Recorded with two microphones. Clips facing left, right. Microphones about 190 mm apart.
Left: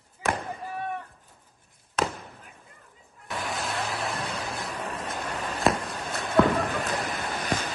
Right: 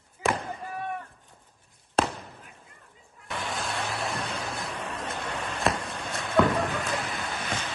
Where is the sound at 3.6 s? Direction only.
Centre (ahead or behind).